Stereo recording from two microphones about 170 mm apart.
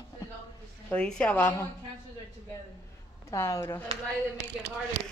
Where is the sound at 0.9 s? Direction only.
5° left (ahead or behind).